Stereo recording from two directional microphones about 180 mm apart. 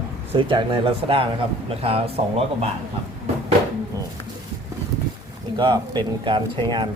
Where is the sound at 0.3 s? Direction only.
30° right (ahead or behind).